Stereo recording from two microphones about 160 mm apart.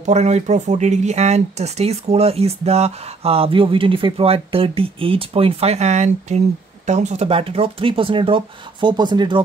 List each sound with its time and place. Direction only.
0.0 s speech: 45° right (ahead or behind); by 9.4 s 25° right (ahead or behind)